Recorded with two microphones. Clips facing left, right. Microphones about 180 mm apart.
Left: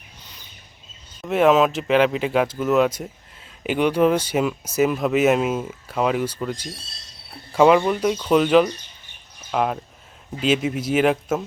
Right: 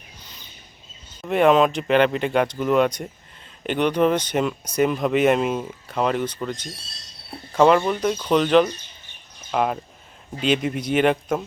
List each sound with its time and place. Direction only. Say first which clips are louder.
1.2 s speech: even; centre (ahead or behind)